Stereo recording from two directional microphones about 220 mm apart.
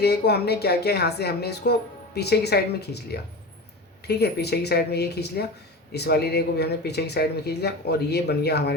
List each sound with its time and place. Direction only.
0.0 s a woman's voice: 45° left (ahead or behind)